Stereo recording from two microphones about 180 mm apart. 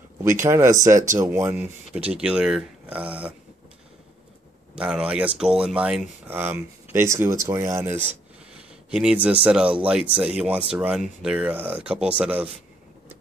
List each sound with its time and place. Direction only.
0.2 s speech: 15° right (ahead or behind)
4.7 s speech: 5° right (ahead or behind)